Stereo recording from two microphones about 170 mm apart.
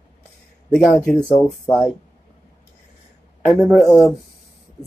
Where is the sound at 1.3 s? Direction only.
25° left (ahead or behind).